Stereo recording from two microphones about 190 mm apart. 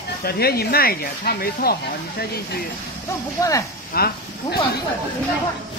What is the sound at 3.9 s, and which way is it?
Speech, 55° left (ahead or behind).